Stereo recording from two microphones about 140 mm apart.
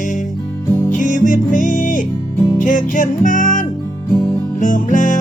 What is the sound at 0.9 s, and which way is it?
Music, 65° left (ahead or behind).